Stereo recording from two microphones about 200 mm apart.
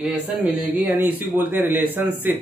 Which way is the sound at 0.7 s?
10° right (ahead or behind).